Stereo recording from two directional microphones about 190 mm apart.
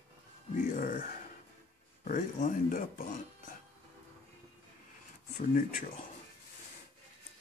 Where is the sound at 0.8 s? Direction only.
45° left (ahead or behind).